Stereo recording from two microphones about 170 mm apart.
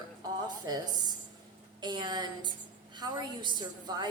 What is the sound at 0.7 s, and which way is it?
A woman's voice, 25° right (ahead or behind).